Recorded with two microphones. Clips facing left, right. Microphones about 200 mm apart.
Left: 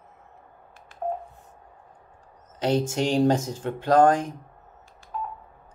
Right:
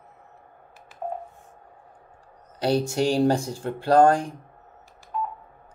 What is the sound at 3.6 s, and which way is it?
Speech, 20° left (ahead or behind).